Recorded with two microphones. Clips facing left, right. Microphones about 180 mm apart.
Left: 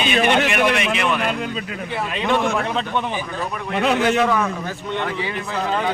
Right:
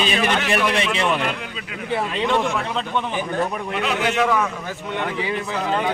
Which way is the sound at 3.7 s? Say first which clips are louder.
Left 8 dB; 40° left (ahead or behind).